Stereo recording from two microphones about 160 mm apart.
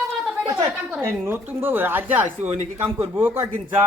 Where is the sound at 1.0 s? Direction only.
15° right (ahead or behind).